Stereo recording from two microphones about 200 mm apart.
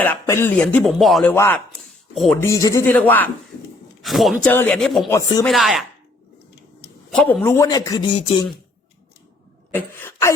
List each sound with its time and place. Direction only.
0.0 s speech: 10° left (ahead or behind)
2.4 s speech: 15° left (ahead or behind)
5.0 s speech: 15° left (ahead or behind)
5.5 s speech: centre (ahead or behind)
7.1 s speech: 5° left (ahead or behind); by 8.4 s 20° left (ahead or behind)
9.7 s speech: 10° left (ahead or behind)